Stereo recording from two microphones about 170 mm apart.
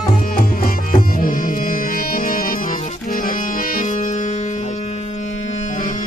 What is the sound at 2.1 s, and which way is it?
Music, 55° left (ahead or behind).